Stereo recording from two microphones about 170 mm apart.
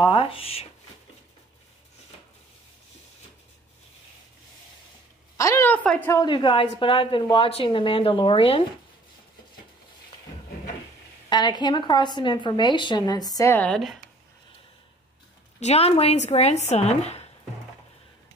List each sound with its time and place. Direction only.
0.1 s a sound: 30° left (ahead or behind)
5.4 s a sound: 15° left (ahead or behind)
6.2 s a woman's voice: 25° left (ahead or behind)
11.2 s a woman's voice: 25° left (ahead or behind)
13.7 s speech: centre (ahead or behind)
15.6 s a woman's voice: 40° left (ahead or behind)